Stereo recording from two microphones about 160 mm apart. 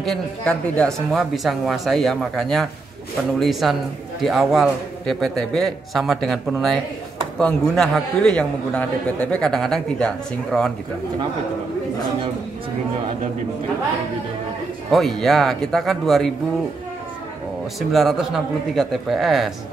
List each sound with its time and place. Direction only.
0.0 s a man's voice: 5° left (ahead or behind)
14.9 s a man's voice: centre (ahead or behind)
17.7 s a man's voice: centre (ahead or behind)